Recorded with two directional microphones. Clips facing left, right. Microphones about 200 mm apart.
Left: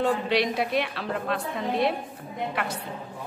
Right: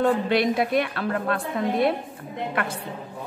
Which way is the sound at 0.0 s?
55° right (ahead or behind).